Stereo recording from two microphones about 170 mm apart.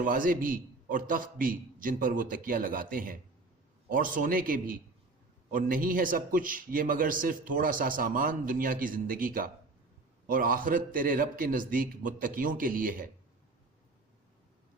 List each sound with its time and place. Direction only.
0.0 s a man's voice: 55° right (ahead or behind)